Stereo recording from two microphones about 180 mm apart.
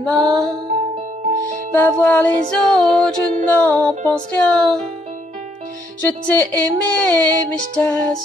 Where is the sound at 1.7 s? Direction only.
10° left (ahead or behind).